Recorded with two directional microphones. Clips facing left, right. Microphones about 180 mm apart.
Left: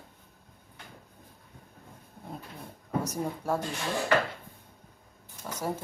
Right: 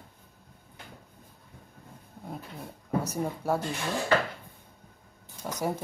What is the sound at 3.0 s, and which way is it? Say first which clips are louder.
Speech: right 2 dB; 5° right (ahead or behind).